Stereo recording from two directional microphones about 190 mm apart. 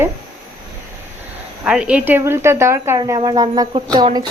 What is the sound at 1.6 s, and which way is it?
A woman's voice, 5° right (ahead or behind).